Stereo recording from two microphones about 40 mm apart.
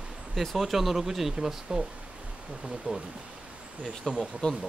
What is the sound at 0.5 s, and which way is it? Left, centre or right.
Speech, centre.